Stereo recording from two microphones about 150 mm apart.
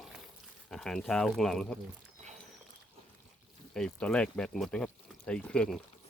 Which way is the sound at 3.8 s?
5° left (ahead or behind).